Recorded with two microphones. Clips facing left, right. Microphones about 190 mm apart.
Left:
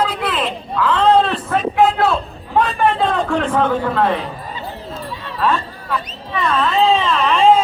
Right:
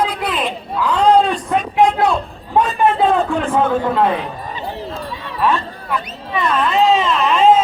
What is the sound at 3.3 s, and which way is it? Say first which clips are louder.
Speech: even; 10° right (ahead or behind).